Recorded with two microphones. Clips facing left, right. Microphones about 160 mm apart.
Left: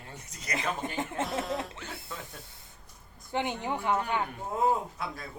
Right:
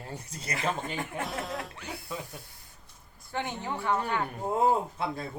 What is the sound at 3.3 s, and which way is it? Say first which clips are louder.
Speech: left 2 dB; 15° left (ahead or behind).